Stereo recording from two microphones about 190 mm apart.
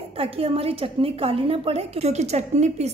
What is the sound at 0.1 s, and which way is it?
A woman's voice, 30° right (ahead or behind).